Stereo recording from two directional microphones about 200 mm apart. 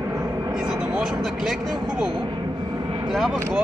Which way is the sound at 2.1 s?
20° right (ahead or behind).